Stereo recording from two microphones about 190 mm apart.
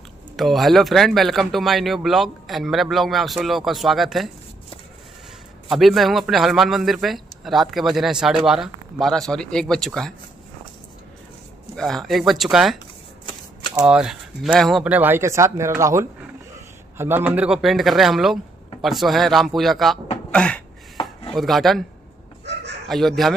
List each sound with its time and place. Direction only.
0.4 s speech: centre (ahead or behind)
5.7 s speech: centre (ahead or behind)
11.7 s speech: centre (ahead or behind)
12.7 s shuffling cards: 25° left (ahead or behind)
13.7 s speech: 5° right (ahead or behind)
20.2 s a sound: 5° left (ahead or behind)
21.4 s speech: centre (ahead or behind)
22.4 s chicken: 65° right (ahead or behind)
22.8 s speech: centre (ahead or behind)